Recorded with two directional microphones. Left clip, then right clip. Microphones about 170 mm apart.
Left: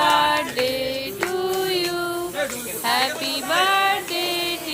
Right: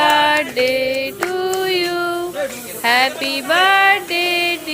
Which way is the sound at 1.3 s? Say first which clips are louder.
Right 5 dB; 15° right (ahead or behind).